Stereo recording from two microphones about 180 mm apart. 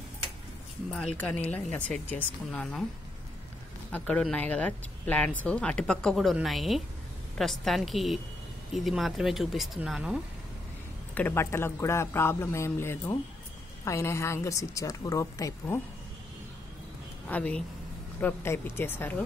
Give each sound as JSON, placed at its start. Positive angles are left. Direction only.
{"t": 1.1, "sound": "speech", "side_deg": 5}
{"t": 3.9, "sound": "speech", "side_deg": 5}
{"t": 11.1, "sound": "speech", "side_deg": 10}
{"t": 17.3, "sound": "speech", "side_deg": 5}